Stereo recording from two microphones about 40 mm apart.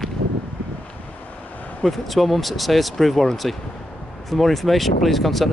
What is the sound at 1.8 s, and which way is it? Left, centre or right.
Speech, centre.